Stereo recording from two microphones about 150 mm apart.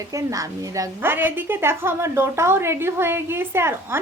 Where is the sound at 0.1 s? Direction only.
20° right (ahead or behind).